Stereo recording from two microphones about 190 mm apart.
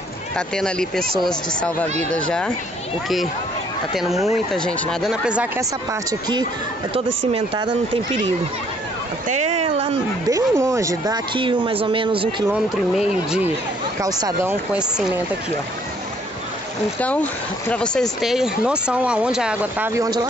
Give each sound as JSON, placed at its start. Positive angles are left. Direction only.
{"t": 0.4, "sound": "speech", "side_deg": 5}
{"t": 3.9, "sound": "speech", "side_deg": 0}
{"t": 5.6, "sound": "speech", "side_deg": -20}
{"t": 9.3, "sound": "speech", "side_deg": -40}
{"t": 10.3, "sound": "speech", "side_deg": -15}
{"t": 11.3, "sound": "speech", "side_deg": -25}
{"t": 12.4, "sound": "speech", "side_deg": -5}
{"t": 14.0, "sound": "speech", "side_deg": -15}
{"t": 17.0, "sound": "speech", "side_deg": 10}